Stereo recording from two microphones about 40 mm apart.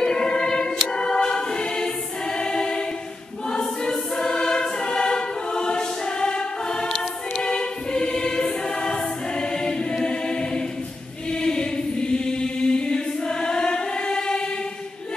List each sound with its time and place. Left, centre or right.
0.0 s choir: centre